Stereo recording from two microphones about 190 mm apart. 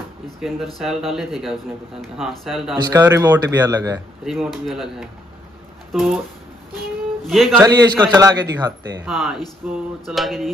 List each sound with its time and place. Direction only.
0.4 s a man's voice: 5° right (ahead or behind)
2.9 s speech: 15° right (ahead or behind)
4.2 s a man's voice: centre (ahead or behind)
7.2 s a man's voice: centre (ahead or behind)
7.5 s a man's voice: 20° right (ahead or behind)
9.0 s a man's voice: centre (ahead or behind)